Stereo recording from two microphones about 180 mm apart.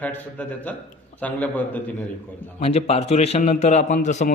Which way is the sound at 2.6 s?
35° left (ahead or behind).